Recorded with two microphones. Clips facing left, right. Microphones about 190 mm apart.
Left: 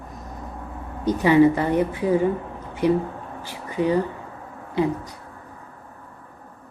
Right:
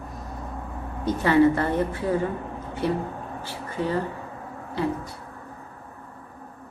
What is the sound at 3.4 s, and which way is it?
Speech, 15° left (ahead or behind).